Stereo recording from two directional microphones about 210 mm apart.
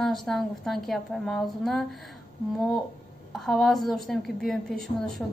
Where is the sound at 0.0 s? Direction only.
Centre (ahead or behind).